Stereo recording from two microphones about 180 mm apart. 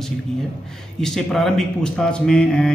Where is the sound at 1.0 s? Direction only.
5° left (ahead or behind).